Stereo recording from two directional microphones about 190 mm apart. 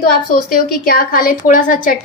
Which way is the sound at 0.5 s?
50° left (ahead or behind).